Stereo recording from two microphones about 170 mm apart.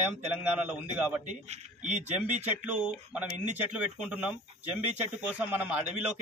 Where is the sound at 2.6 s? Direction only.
5° right (ahead or behind).